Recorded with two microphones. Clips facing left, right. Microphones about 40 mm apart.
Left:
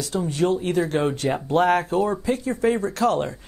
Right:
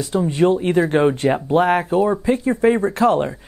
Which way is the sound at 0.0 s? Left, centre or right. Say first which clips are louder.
Right 6 dB; right.